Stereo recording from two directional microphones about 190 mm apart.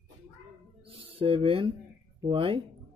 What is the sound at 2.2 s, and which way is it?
Speech, 25° right (ahead or behind).